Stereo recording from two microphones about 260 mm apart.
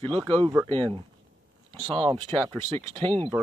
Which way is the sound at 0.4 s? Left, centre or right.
Centre.